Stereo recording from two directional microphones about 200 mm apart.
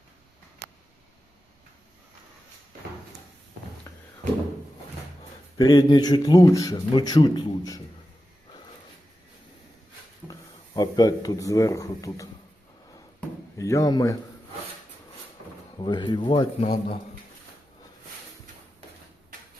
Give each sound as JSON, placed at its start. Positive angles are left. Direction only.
{"t": 5.5, "sound": "speech", "side_deg": 20}
{"t": 10.8, "sound": "speech", "side_deg": 20}
{"t": 13.6, "sound": "speech", "side_deg": 15}
{"t": 15.8, "sound": "speech", "side_deg": 25}